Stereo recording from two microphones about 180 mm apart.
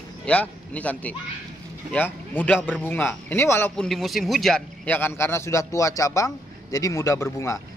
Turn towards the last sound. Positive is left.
turn(degrees=20)  # may be behind; listen again after turning